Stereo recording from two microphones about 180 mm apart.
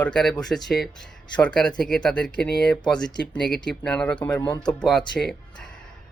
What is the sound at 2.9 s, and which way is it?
Speech, 25° left (ahead or behind).